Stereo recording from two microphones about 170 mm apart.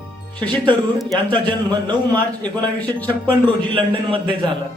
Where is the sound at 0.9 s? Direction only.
Centre (ahead or behind).